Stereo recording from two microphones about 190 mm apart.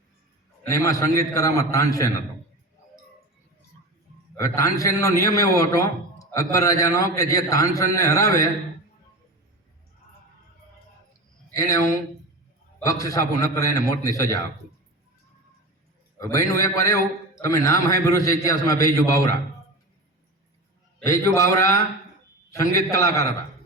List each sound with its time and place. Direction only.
0.7 s a man's voice: 15° left (ahead or behind)
4.4 s a man's voice: 15° left (ahead or behind)
11.5 s a man's voice: 15° left (ahead or behind)
12.8 s a man's voice: 15° left (ahead or behind)
16.1 s a man's voice: 15° left (ahead or behind)
21.0 s a man's voice: 15° left (ahead or behind)